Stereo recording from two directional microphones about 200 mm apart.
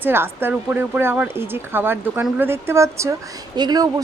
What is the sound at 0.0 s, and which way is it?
Speech, 10° right (ahead or behind).